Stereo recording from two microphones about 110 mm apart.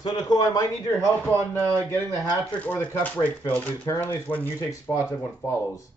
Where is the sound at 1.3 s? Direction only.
25° right (ahead or behind).